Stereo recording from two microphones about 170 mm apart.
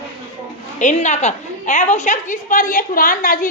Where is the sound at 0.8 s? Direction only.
45° left (ahead or behind).